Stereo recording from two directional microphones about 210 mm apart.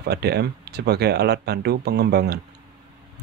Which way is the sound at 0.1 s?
50° right (ahead or behind).